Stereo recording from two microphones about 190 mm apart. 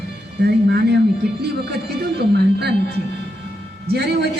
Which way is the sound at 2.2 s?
60° right (ahead or behind).